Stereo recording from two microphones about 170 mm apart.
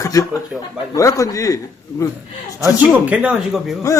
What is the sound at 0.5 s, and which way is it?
Speech, centre (ahead or behind).